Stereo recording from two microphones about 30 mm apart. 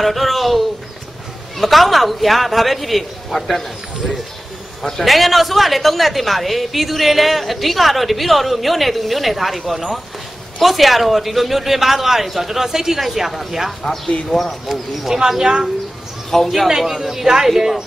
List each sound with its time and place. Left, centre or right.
0.0 s a woman's voice: centre
5.0 s a woman's voice: centre
15.1 s speech: centre
16.3 s a man's voice: centre
16.6 s a man's voice: centre